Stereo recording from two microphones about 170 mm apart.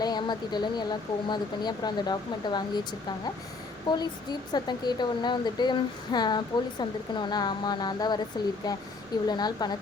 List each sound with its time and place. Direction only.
0.0 s speech: 25° left (ahead or behind)
3.9 s speech: 25° left (ahead or behind)